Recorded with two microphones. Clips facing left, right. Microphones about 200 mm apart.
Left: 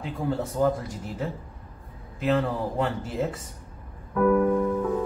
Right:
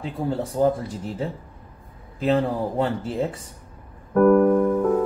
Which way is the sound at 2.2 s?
30° right (ahead or behind).